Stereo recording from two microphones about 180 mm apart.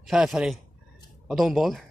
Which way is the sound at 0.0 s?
Centre (ahead or behind).